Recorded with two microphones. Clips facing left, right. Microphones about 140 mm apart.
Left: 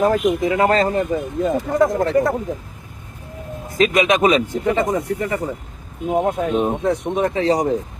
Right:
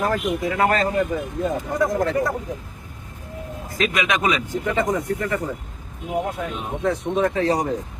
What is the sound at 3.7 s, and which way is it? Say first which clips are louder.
Speech: left 7 dB; 25° left (ahead or behind).